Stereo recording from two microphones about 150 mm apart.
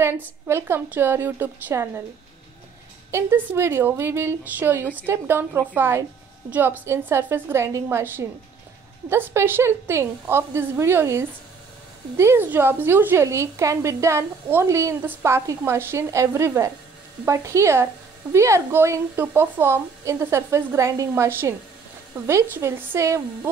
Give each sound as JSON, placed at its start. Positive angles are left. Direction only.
{"t": 0.0, "sound": "a woman's voice", "side_deg": -15}
{"t": 3.1, "sound": "a woman's voice", "side_deg": -15}